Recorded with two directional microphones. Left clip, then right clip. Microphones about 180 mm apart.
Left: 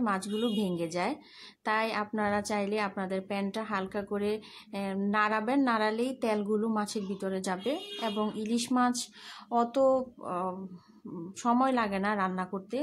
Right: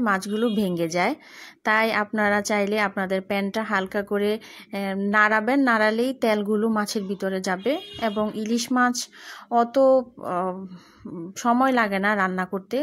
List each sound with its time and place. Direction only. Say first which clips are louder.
0.0 s a woman's voice: right 8 dB; 25° right (ahead or behind)